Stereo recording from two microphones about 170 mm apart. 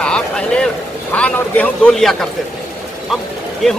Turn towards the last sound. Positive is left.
turn(degrees=0)  # may be behind; listen again after turning